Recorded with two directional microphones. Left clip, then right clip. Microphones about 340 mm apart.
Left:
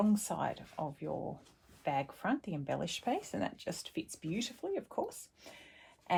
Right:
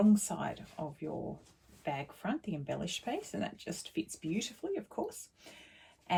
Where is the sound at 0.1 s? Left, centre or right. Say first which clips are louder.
Right 1 dB; centre.